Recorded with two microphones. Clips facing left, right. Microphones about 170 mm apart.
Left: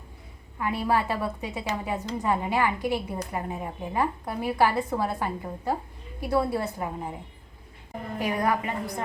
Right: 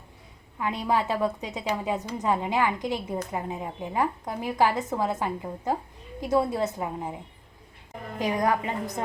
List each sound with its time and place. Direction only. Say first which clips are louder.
0.6 s a woman's voice: even; 15° right (ahead or behind)
8.2 s a woman's voice: right 1 dB; 15° right (ahead or behind)